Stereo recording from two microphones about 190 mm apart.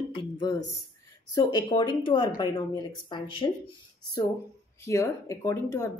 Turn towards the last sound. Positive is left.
turn(degrees=15)  # may be behind; listen again after turning